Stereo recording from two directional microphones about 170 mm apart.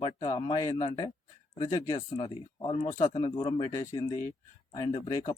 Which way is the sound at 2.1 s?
30° left (ahead or behind).